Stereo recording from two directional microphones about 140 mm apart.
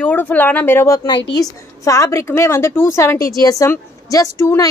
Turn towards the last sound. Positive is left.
turn(degrees=25)  # may be behind; listen again after turning